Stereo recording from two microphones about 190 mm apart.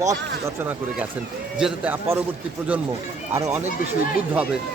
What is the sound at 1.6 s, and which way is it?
Speech, 10° right (ahead or behind).